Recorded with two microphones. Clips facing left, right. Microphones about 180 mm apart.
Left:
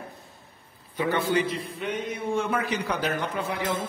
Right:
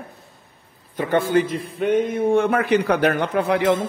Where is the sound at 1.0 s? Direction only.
50° right (ahead or behind); by 3.7 s 70° right (ahead or behind).